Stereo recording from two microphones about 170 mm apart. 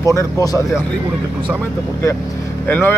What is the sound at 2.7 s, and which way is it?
Speech, 15° left (ahead or behind).